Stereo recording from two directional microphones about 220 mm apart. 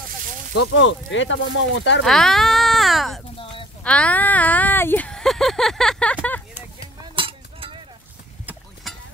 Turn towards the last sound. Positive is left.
turn(degrees=-25)  # may be behind; listen again after turning